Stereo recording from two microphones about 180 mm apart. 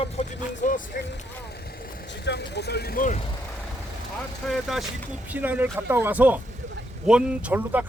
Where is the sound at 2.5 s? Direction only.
65° left (ahead or behind); by 3.2 s 45° left (ahead or behind).